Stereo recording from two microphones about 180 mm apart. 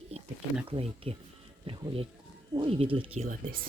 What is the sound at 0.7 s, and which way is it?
Speech, 35° right (ahead or behind).